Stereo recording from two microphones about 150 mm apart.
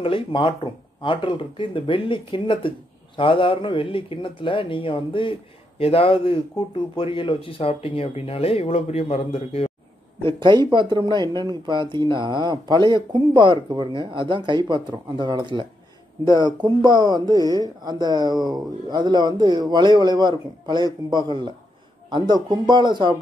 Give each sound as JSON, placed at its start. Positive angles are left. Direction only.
{"t": 0.0, "sound": "speech", "side_deg": 35}
{"t": 10.2, "sound": "speech", "side_deg": -30}